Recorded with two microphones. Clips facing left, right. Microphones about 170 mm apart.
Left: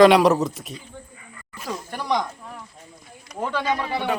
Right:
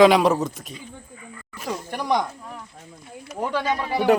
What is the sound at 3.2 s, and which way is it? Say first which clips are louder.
Speech: right 1 dB; 10° right (ahead or behind).